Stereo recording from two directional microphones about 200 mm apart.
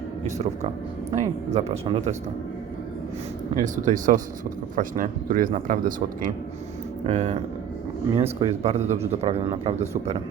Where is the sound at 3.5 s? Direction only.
40° right (ahead or behind).